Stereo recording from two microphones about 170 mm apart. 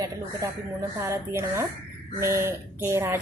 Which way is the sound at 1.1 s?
15° right (ahead or behind).